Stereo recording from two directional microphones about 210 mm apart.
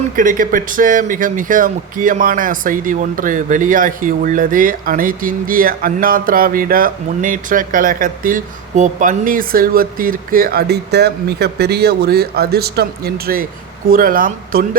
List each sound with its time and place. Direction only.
0.2 s speech: 40° right (ahead or behind)